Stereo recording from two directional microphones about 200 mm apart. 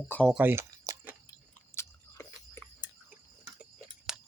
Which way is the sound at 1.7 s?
10° left (ahead or behind).